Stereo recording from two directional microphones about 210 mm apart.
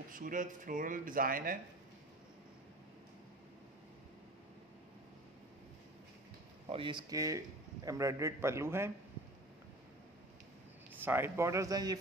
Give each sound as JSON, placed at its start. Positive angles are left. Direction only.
{"t": 0.1, "sound": "speech", "side_deg": -40}
{"t": 6.7, "sound": "a man's voice", "side_deg": -25}
{"t": 11.0, "sound": "a man's voice", "side_deg": -10}